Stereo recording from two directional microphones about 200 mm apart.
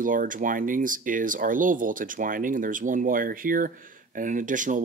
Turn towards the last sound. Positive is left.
turn(degrees=-40)  # may be behind; listen again after turning